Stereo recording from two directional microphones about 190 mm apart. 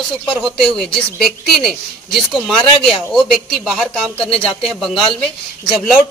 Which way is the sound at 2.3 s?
Centre (ahead or behind).